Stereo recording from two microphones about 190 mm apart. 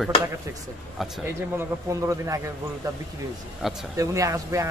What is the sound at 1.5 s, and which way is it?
Speech, 15° right (ahead or behind).